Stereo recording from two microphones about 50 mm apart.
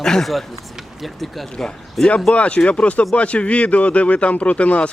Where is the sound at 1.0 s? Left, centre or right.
Centre.